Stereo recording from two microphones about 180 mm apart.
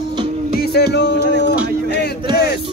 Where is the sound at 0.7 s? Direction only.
65° left (ahead or behind).